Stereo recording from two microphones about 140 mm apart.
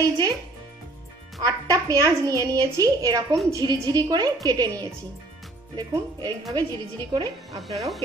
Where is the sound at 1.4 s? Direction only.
25° right (ahead or behind).